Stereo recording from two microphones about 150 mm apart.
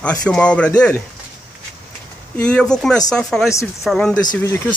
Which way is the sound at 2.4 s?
10° left (ahead or behind).